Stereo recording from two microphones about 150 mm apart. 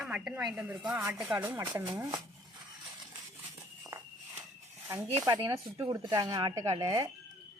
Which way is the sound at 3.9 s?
20° right (ahead or behind).